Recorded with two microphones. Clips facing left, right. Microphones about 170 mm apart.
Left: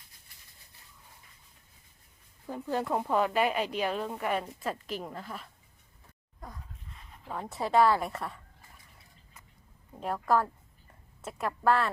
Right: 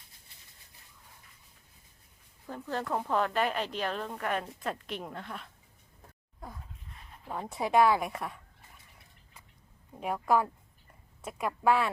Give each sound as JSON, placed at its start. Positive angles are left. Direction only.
{"t": 2.5, "sound": "speech", "side_deg": 10}
{"t": 7.3, "sound": "a woman's voice", "side_deg": -5}
{"t": 7.9, "sound": "a woman's voice", "side_deg": -5}
{"t": 10.0, "sound": "a woman's voice", "side_deg": -5}